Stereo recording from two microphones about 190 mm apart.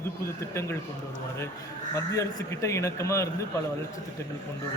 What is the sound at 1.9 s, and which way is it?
Speech, 15° left (ahead or behind).